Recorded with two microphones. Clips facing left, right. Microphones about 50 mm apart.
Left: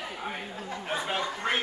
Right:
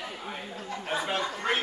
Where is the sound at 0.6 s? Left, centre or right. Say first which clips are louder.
Right 2 dB; centre.